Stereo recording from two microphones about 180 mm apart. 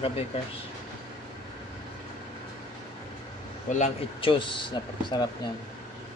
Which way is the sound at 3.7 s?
35° left (ahead or behind).